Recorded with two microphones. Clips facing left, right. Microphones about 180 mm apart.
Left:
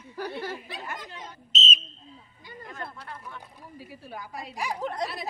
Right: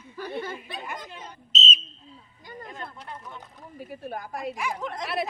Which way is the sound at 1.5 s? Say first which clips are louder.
Right 1 dB; 50° left (ahead or behind).